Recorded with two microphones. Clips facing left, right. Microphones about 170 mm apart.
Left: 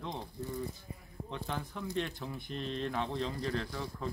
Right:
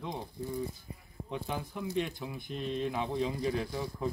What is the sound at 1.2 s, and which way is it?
Speech, 10° right (ahead or behind).